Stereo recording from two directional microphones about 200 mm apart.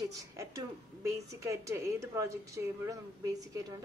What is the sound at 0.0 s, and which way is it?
Speech, 15° right (ahead or behind).